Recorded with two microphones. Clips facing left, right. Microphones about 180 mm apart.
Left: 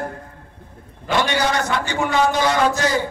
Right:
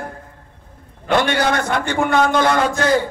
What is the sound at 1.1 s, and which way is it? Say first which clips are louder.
A man's voice: right 3 dB; 55° right (ahead or behind).